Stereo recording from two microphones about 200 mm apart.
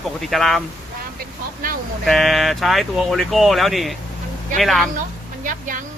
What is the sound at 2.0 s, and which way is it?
Speech, centre (ahead or behind).